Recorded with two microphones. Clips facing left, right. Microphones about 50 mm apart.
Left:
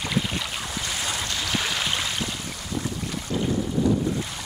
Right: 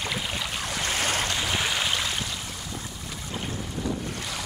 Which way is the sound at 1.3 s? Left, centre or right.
Centre.